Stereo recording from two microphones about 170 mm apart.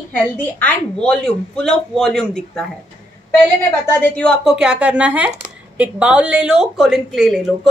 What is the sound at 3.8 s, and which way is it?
A woman's voice, 10° left (ahead or behind).